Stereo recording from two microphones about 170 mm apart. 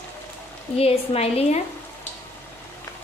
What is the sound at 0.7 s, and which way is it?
Speech, 35° left (ahead or behind).